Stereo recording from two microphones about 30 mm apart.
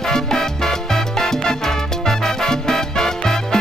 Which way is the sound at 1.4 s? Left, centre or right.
Centre.